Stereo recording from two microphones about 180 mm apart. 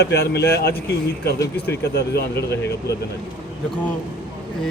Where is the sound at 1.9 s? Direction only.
65° left (ahead or behind).